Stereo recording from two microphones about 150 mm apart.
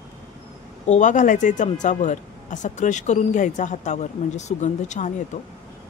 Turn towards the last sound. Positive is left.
turn(degrees=55)  # may be behind; listen again after turning